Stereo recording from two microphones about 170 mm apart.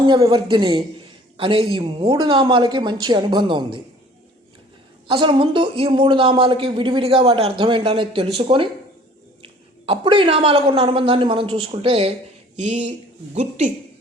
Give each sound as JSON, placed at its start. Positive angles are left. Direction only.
{"t": 0.0, "sound": "speech", "side_deg": -25}
{"t": 5.0, "sound": "a woman's voice", "side_deg": -30}